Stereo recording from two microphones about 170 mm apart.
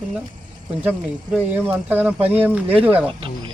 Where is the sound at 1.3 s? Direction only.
10° right (ahead or behind).